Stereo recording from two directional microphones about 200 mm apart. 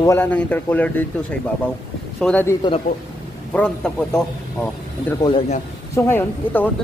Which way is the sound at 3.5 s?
5° left (ahead or behind).